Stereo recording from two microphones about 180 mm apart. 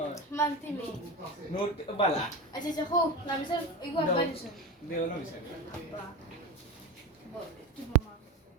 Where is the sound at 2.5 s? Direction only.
20° left (ahead or behind).